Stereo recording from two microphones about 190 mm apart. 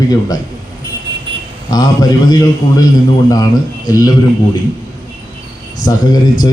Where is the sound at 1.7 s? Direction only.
20° left (ahead or behind).